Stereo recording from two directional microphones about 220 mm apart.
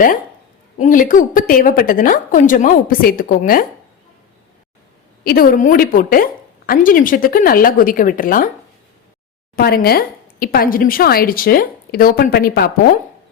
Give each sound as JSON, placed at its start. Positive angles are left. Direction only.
{"t": 0.8, "sound": "a woman's voice", "side_deg": 35}
{"t": 5.2, "sound": "a woman's voice", "side_deg": 40}
{"t": 9.6, "sound": "a woman's voice", "side_deg": 45}